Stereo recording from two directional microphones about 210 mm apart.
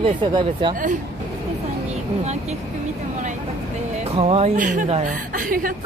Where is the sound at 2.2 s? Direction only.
30° right (ahead or behind).